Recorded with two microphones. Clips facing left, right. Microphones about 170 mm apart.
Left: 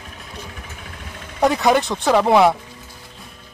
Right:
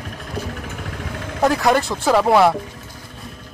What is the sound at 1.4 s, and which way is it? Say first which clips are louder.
Speech: even; centre (ahead or behind).